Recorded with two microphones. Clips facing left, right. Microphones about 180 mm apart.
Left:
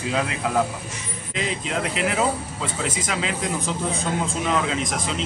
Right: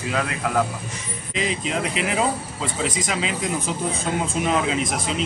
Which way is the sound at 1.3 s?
Centre (ahead or behind).